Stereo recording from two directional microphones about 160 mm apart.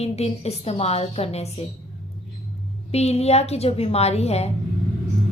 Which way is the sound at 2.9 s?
40° left (ahead or behind).